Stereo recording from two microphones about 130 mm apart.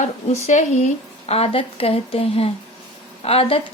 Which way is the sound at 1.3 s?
50° left (ahead or behind).